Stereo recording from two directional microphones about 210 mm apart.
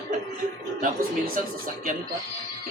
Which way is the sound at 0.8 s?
40° right (ahead or behind).